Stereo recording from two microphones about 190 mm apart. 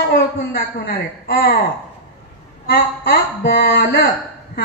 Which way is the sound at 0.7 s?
50° left (ahead or behind).